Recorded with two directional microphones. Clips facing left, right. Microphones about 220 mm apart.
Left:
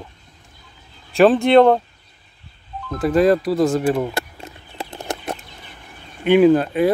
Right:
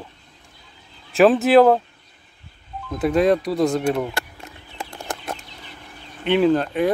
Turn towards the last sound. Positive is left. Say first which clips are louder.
# left 4 dB
turn(degrees=5)  # may be behind; listen again after turning